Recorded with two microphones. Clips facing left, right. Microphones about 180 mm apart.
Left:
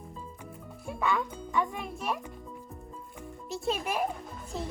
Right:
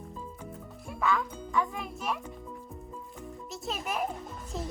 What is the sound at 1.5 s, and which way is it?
Speech, 25° left (ahead or behind).